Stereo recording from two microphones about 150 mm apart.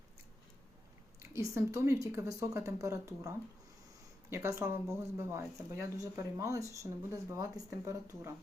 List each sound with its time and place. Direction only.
1.2 s speech: 20° right (ahead or behind)